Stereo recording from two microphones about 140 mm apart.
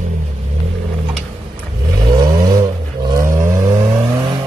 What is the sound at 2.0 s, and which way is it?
Vehicle, 30° right (ahead or behind).